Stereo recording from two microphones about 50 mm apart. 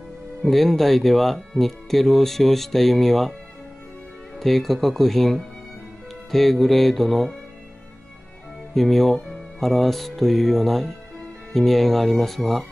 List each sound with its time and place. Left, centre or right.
0.4 s speech: centre
4.4 s speech: centre
8.7 s speech: centre